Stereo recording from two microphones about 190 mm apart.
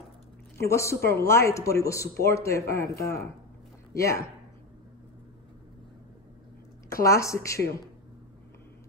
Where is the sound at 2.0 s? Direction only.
55° left (ahead or behind).